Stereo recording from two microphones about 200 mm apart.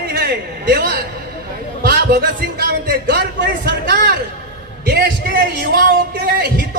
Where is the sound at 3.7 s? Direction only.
50° right (ahead or behind).